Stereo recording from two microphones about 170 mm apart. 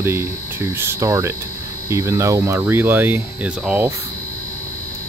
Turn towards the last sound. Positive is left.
turn(degrees=-10)  # may be behind; listen again after turning